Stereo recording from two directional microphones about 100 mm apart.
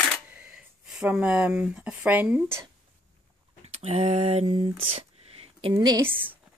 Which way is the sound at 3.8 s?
90° right.